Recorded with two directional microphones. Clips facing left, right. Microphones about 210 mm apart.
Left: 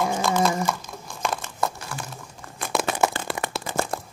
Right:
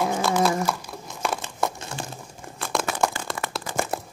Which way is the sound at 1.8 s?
25° right (ahead or behind).